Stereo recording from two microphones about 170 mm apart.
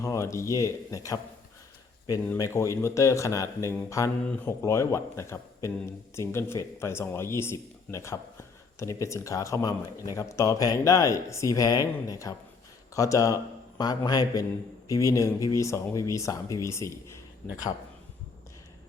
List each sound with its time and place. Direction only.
0.0 s speech: 20° left (ahead or behind)
2.3 s a man's voice: 15° left (ahead or behind)